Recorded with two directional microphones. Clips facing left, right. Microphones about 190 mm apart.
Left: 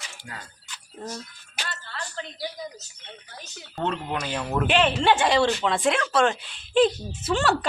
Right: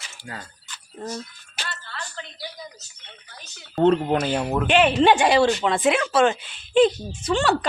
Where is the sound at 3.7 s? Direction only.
35° right (ahead or behind).